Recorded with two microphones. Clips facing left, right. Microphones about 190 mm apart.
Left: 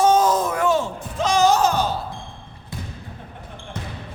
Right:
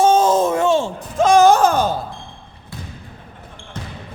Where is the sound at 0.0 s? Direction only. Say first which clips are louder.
Right 3 dB; 25° right (ahead or behind).